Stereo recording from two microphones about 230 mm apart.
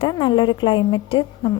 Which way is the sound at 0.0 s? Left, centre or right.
Left.